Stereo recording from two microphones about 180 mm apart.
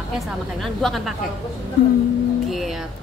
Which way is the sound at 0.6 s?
Centre (ahead or behind).